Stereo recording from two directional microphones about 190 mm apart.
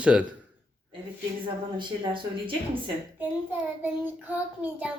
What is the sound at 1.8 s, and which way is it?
Speech, 25° right (ahead or behind).